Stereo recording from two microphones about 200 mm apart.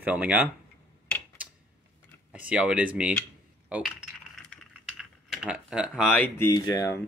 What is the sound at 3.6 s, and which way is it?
Coin, 5° right (ahead or behind).